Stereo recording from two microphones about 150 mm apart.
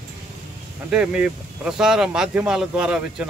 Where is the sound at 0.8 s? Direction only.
5° right (ahead or behind).